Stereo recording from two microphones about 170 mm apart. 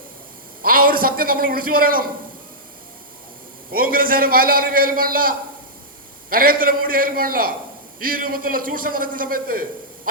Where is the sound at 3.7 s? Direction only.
55° right (ahead or behind).